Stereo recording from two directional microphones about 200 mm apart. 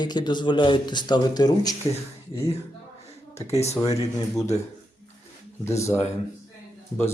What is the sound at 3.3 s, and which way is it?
Speech, 30° left (ahead or behind).